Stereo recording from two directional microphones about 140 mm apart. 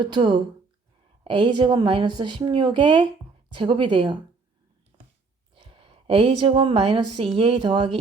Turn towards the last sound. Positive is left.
turn(degrees=-40)  # may be behind; listen again after turning